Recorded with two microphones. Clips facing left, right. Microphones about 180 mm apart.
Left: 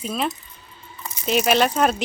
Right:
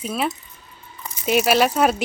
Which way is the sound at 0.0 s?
5° right (ahead or behind).